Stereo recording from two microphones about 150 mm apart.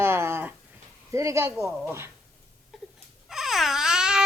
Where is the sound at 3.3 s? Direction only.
Centre (ahead or behind).